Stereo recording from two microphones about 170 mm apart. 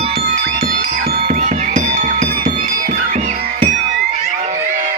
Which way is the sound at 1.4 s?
50° right (ahead or behind).